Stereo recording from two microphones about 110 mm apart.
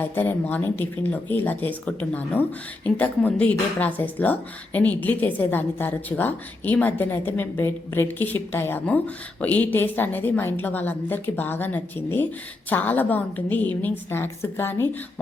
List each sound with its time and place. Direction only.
0.0 s a woman's voice: 15° left (ahead or behind)